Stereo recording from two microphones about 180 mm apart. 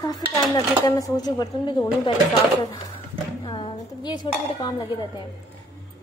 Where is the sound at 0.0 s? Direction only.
20° left (ahead or behind).